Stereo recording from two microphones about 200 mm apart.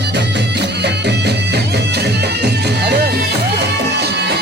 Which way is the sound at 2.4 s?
55° right (ahead or behind).